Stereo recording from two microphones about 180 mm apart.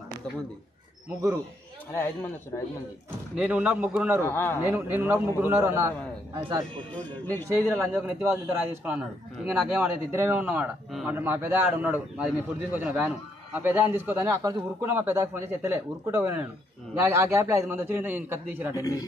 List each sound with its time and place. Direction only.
3.3 s a man's voice: 10° right (ahead or behind)
4.3 s a man's voice: 15° left (ahead or behind)
4.6 s a man's voice: 10° right (ahead or behind)
18.8 s speech: 20° left (ahead or behind)